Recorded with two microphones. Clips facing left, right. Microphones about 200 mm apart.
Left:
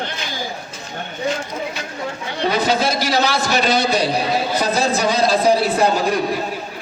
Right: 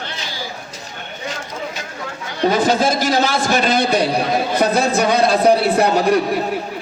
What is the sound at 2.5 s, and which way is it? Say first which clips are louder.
A man's voice: right 3 dB; 45° right (ahead or behind).